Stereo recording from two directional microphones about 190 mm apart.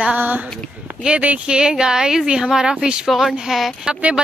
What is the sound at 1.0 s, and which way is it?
Speech, 5° right (ahead or behind).